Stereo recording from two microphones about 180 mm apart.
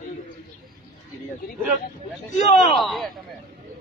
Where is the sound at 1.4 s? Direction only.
50° left (ahead or behind).